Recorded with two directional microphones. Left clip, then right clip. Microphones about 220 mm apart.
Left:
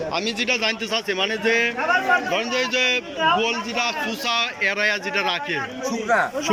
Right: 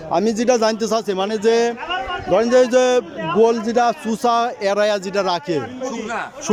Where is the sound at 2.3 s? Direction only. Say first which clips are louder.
Right 8 dB; 35° right (ahead or behind).